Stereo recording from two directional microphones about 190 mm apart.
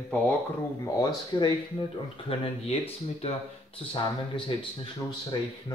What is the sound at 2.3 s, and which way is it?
Speech, 30° left (ahead or behind).